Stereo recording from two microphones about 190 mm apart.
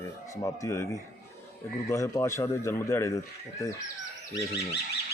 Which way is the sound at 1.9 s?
15° left (ahead or behind).